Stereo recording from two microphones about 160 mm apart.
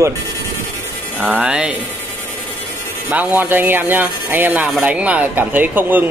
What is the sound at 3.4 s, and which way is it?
Speech, 10° right (ahead or behind).